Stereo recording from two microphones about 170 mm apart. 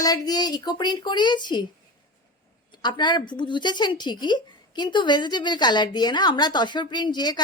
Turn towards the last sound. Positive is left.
turn(degrees=25)  # may be behind; listen again after turning